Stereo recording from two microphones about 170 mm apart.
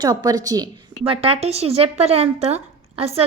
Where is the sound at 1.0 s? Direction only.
35° right (ahead or behind).